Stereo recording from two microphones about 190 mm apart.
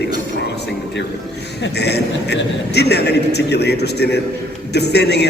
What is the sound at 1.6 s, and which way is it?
A woman's voice, 60° left (ahead or behind).